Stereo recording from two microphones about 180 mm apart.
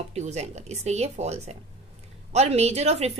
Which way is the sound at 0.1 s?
40° right (ahead or behind).